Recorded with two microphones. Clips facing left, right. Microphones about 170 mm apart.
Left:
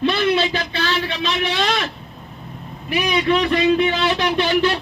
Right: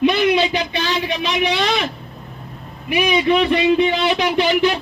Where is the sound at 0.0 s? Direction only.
15° right (ahead or behind).